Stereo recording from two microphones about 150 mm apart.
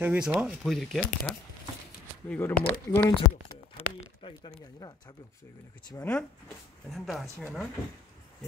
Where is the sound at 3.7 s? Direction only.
45° left (ahead or behind).